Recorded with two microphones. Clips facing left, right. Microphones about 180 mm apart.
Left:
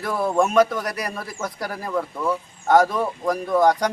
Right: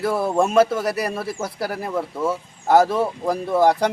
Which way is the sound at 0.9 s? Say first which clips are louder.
Right 5 dB; 5° right (ahead or behind).